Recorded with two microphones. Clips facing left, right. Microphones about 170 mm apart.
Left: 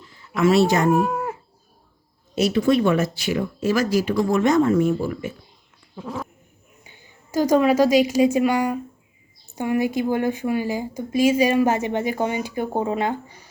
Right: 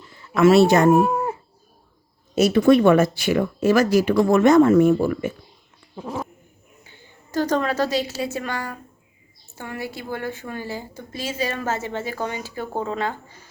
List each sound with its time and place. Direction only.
0.3 s speech: 65° right (ahead or behind)
0.9 s a sound: 20° right (ahead or behind)
2.3 s speech: 50° right (ahead or behind)
6.8 s a woman's voice: 10° left (ahead or behind)